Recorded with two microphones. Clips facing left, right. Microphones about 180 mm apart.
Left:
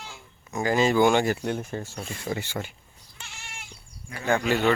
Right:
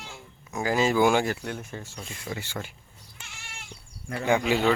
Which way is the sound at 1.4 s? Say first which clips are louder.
Left 6 dB; 35° left (ahead or behind).